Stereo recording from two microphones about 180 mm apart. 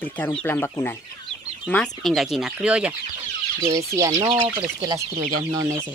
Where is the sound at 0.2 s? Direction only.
10° left (ahead or behind).